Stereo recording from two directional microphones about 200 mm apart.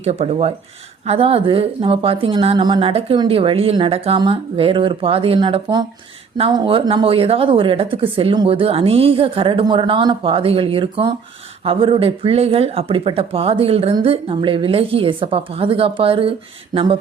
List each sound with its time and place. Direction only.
0.0 s speech: 30° right (ahead or behind)